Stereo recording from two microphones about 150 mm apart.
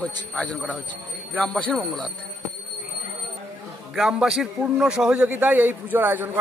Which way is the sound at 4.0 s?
Centre (ahead or behind).